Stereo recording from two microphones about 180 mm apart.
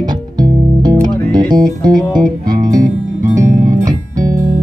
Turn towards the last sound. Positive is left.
turn(degrees=-20)  # may be behind; listen again after turning